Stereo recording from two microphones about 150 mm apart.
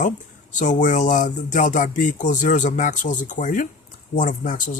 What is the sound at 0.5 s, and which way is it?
A man's voice, 55° left (ahead or behind).